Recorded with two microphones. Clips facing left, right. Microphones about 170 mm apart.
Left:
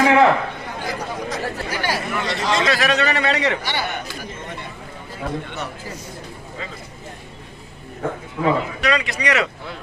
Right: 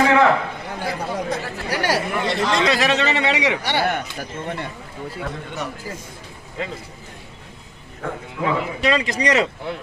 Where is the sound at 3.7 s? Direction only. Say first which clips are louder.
Right 5 dB; 65° right (ahead or behind).